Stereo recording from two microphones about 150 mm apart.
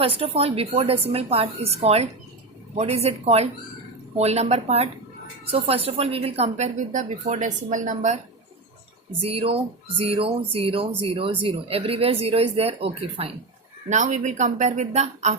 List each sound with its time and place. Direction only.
0.0 s a woman's voice: 40° right (ahead or behind); by 8.2 s 55° right (ahead or behind)
9.3 s a woman's voice: 40° right (ahead or behind)
13.9 s a woman's voice: 55° right (ahead or behind)